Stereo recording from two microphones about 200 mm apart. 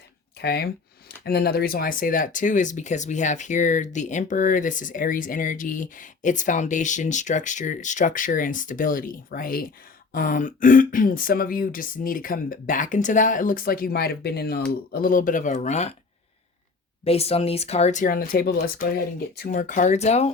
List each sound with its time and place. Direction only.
0.3 s speech: 55° left (ahead or behind); by 16.0 s 35° left (ahead or behind)
17.0 s speech: 30° left (ahead or behind)
18.2 s speech: 50° left (ahead or behind)
19.5 s speech: 40° left (ahead or behind)